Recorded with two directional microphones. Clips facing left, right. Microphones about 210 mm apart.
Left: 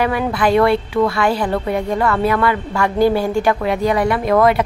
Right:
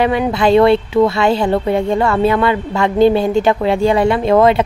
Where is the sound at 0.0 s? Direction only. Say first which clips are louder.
Right 3 dB; 25° right (ahead or behind).